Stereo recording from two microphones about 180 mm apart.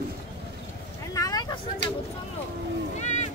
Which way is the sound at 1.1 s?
20° left (ahead or behind).